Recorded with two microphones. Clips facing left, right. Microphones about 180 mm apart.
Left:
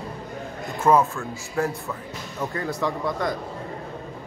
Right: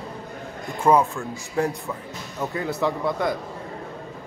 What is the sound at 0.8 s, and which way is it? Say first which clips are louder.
Speech: even; 15° right (ahead or behind).